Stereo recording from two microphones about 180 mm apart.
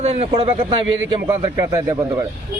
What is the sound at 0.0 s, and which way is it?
Speech, 35° right (ahead or behind).